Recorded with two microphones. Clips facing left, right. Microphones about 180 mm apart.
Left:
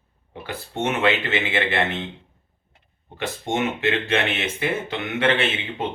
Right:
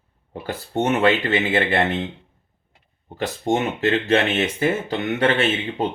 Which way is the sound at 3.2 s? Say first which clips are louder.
Right 3 dB; 40° right (ahead or behind).